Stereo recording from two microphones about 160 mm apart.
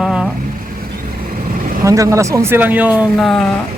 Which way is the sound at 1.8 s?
20° right (ahead or behind).